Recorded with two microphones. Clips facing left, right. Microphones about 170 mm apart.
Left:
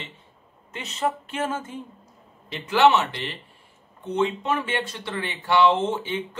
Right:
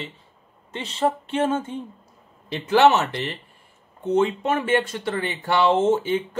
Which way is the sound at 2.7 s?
40° right (ahead or behind).